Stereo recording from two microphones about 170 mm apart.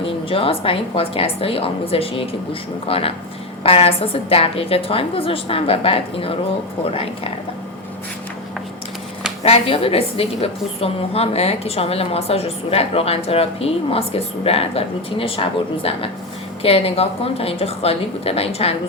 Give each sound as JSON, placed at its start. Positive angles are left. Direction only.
{"t": 0.0, "sound": "a woman's voice", "side_deg": 35}
{"t": 9.4, "sound": "a woman's voice", "side_deg": 35}